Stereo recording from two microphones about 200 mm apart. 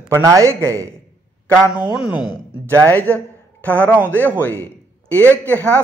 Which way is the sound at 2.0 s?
20° left (ahead or behind).